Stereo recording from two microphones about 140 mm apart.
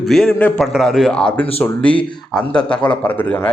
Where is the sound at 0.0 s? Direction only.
Centre (ahead or behind).